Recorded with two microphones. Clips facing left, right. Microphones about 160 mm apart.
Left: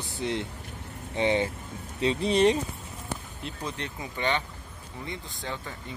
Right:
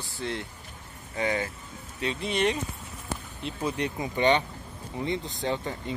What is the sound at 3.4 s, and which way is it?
Speech, 5° right (ahead or behind).